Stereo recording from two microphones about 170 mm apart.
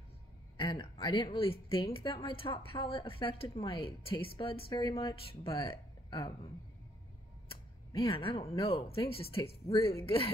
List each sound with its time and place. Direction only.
0.6 s a woman's voice: 30° left (ahead or behind)
8.1 s speech: 35° left (ahead or behind)